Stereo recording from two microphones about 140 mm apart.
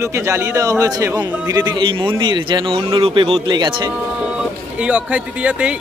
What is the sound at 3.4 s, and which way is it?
Speech, 30° right (ahead or behind).